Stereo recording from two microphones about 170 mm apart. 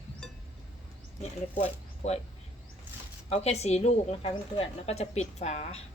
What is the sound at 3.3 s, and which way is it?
A woman's voice, 40° left (ahead or behind).